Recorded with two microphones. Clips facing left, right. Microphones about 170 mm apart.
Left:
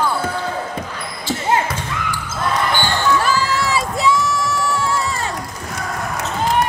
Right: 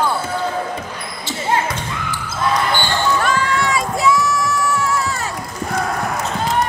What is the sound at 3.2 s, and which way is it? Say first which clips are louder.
Run: even; 30° left (ahead or behind).